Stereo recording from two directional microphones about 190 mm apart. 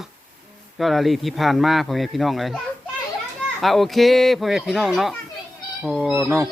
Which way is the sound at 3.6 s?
Centre (ahead or behind).